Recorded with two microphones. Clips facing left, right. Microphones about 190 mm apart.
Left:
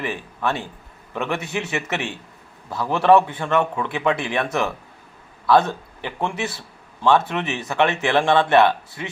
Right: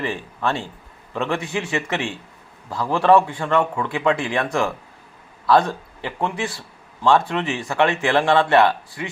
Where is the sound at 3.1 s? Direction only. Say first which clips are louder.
Even; 20° left (ahead or behind).